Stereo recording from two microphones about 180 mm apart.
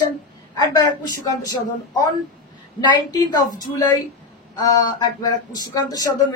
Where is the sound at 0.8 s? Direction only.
20° left (ahead or behind).